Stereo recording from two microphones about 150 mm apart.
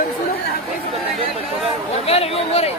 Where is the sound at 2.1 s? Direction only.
40° left (ahead or behind).